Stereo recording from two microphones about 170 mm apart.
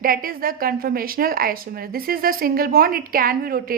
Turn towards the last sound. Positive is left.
turn(degrees=-60)  # may be behind; listen again after turning